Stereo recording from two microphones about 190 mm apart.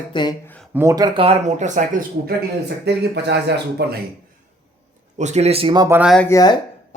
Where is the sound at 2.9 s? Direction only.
60° right (ahead or behind).